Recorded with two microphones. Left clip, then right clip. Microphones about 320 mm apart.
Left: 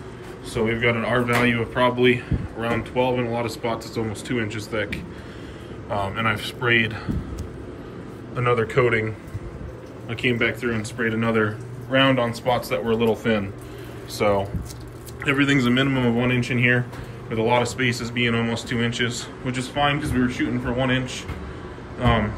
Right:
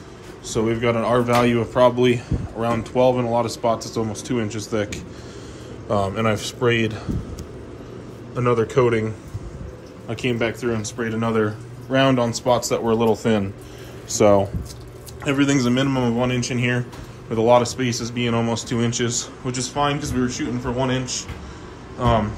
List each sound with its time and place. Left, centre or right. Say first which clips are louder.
0.5 s speech: right 1 dB; centre
8.4 s speech: right 2 dB; centre
15.2 s speech: even; centre